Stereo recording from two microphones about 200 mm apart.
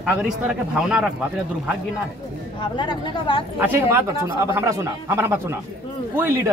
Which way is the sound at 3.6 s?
10° right (ahead or behind).